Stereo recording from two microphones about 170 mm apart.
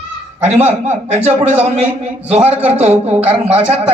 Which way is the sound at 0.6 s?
40° right (ahead or behind).